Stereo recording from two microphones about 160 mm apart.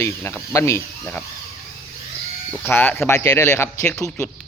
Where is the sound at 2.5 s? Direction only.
10° left (ahead or behind).